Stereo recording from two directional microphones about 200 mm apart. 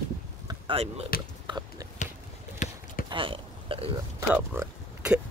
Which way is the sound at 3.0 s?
25° right (ahead or behind).